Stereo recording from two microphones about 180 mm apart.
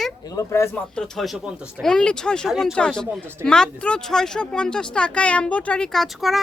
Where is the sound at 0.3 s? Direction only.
15° left (ahead or behind).